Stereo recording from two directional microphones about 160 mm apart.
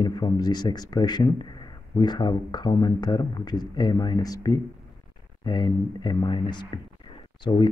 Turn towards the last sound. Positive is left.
turn(degrees=30)  # may be behind; listen again after turning